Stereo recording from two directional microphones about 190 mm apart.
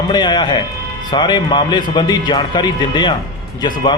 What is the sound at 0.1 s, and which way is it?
A man's voice, 25° left (ahead or behind).